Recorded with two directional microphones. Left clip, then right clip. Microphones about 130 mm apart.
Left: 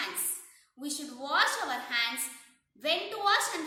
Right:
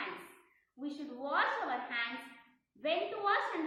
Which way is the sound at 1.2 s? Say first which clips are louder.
Left 5 dB; 20° left (ahead or behind).